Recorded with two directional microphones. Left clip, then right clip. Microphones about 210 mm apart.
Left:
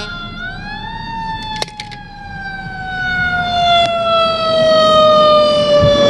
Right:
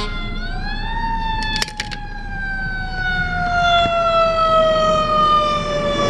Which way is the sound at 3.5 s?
15° right (ahead or behind).